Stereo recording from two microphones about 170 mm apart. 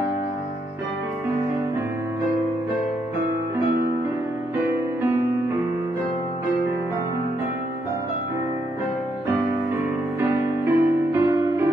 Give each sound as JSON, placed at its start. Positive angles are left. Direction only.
{"t": 10.2, "sound": "music", "side_deg": -15}